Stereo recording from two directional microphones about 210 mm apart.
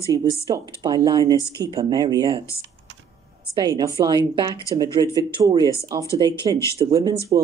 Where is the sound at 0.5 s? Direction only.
20° right (ahead or behind).